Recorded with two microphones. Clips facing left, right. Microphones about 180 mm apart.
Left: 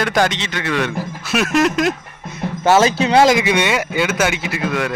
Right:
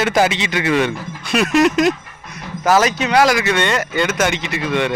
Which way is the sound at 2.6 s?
25° left (ahead or behind).